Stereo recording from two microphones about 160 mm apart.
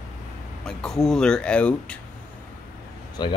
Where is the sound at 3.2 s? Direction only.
25° left (ahead or behind).